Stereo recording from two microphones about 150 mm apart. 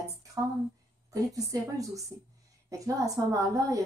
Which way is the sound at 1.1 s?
25° right (ahead or behind).